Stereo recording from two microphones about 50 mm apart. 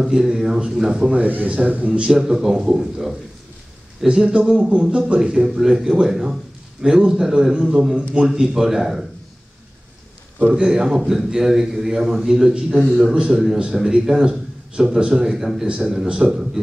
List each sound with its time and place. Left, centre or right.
0.0 s a man's voice: centre
1.1 s a man's voice: right
1.9 s a man's voice: centre
10.5 s a man's voice: centre